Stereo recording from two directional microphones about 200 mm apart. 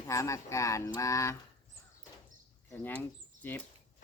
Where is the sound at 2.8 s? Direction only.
10° left (ahead or behind).